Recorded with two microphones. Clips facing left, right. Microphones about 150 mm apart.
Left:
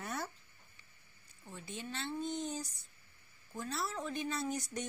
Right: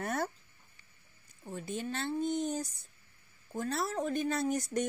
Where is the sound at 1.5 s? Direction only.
45° right (ahead or behind).